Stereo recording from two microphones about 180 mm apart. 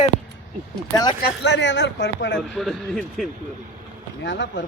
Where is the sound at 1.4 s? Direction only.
75° left (ahead or behind).